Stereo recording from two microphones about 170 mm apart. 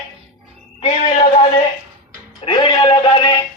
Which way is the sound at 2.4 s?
25° left (ahead or behind).